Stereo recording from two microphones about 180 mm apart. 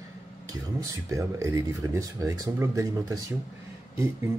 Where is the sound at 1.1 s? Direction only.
15° right (ahead or behind).